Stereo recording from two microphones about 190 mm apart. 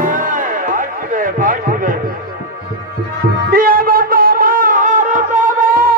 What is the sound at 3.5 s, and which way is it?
Music, 50° right (ahead or behind).